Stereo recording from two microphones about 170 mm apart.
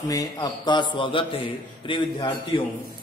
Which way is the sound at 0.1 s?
20° left (ahead or behind).